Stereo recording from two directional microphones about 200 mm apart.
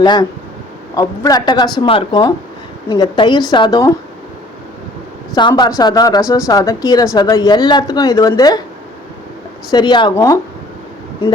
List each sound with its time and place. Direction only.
0.0 s speech: 20° left (ahead or behind)
5.3 s speech: 20° left (ahead or behind)
9.7 s speech: 20° left (ahead or behind)